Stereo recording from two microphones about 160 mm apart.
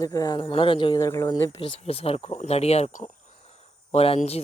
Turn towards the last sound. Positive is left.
turn(degrees=40)  # may be behind; listen again after turning